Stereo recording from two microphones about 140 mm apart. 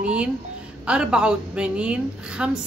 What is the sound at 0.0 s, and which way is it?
A woman's voice, 10° right (ahead or behind).